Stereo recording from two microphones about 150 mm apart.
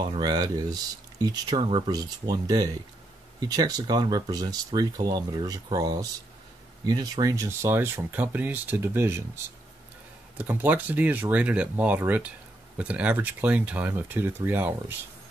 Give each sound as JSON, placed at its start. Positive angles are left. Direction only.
{"t": 0.0, "sound": "speech", "side_deg": -30}